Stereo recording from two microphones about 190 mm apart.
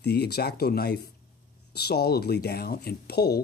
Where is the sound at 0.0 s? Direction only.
60° left (ahead or behind).